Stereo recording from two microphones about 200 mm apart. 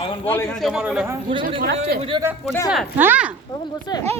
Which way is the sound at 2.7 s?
5° right (ahead or behind).